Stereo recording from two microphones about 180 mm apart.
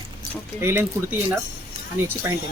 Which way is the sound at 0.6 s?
15° right (ahead or behind).